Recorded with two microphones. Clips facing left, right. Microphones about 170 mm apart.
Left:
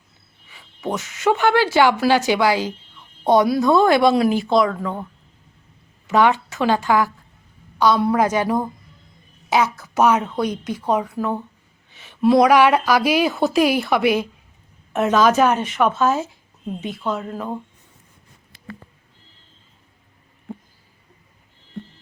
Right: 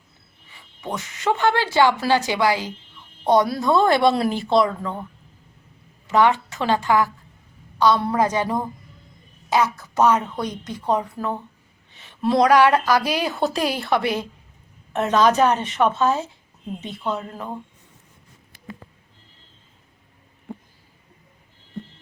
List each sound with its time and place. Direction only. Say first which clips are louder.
0.9 s speech: left 4 dB; 20° left (ahead or behind)
1.2 s a woman's voice: left 3 dB; 10° left (ahead or behind)
3.6 s a woman's voice: left 2 dB; 5° left (ahead or behind)
6.1 s a woman's voice: left 1 dB; 15° left (ahead or behind)